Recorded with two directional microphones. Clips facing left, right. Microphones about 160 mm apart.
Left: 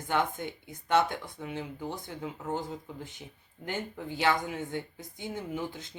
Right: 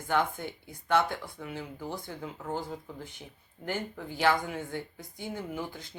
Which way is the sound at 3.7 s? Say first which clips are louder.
Right 1 dB; 20° left (ahead or behind).